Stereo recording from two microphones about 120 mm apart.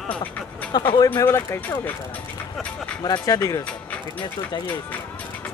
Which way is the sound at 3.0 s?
35° left (ahead or behind).